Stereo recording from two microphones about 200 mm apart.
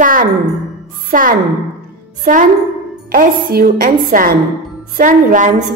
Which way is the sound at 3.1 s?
45° right (ahead or behind).